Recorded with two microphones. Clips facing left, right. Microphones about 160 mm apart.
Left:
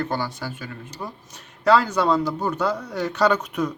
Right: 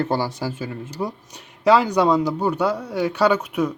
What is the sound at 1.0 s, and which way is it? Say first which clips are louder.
A woman's voice: right 8 dB; 15° right (ahead or behind).